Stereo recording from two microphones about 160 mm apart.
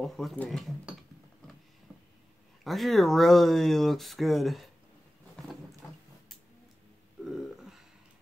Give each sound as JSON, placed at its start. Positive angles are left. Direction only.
{"t": 0.0, "sound": "speech", "side_deg": 0}
{"t": 1.9, "sound": "a sound", "side_deg": 0}
{"t": 2.6, "sound": "speech", "side_deg": 0}
{"t": 7.2, "sound": "burping", "side_deg": 0}